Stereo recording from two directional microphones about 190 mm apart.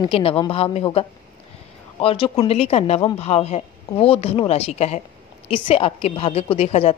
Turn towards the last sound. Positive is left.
turn(degrees=30)  # may be behind; listen again after turning